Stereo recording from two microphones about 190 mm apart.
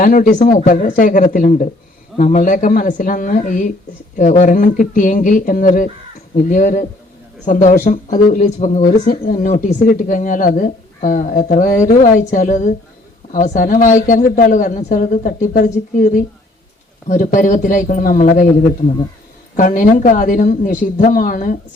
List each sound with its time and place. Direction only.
0.0 s speech: 45° left (ahead or behind)
19.5 s speech: 40° left (ahead or behind)